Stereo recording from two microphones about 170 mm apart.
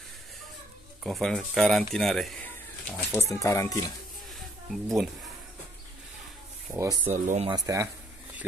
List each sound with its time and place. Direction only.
1.0 s speech: centre (ahead or behind)
3.1 s speech: 20° left (ahead or behind)
4.6 s speech: centre (ahead or behind)
6.7 s speech: 15° right (ahead or behind)
7.1 s speech: 45° right (ahead or behind)
7.4 s speech: 20° right (ahead or behind)